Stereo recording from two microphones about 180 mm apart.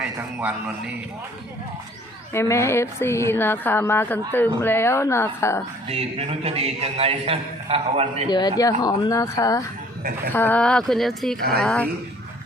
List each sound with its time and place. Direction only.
0.0 s speech: 5° right (ahead or behind)
2.3 s a woman's voice: 15° left (ahead or behind)
5.9 s a man's voice: 35° right (ahead or behind)
8.3 s speech: 25° left (ahead or behind); by 11.3 s centre (ahead or behind)
11.3 s speech: 60° right (ahead or behind)
11.6 s a woman's voice: 5° left (ahead or behind)